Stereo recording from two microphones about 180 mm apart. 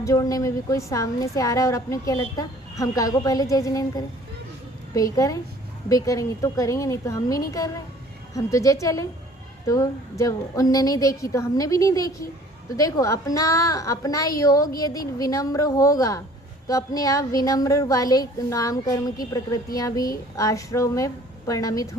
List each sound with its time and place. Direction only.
0.0 s a woman's voice: 20° left (ahead or behind)